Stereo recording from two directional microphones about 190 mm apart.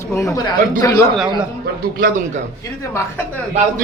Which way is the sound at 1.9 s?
45° right (ahead or behind).